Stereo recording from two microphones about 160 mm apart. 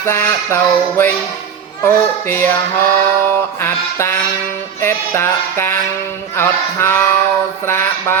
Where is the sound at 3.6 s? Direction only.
15° left (ahead or behind).